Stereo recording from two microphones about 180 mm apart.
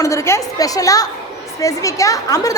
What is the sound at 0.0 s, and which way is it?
A woman's voice, 15° left (ahead or behind).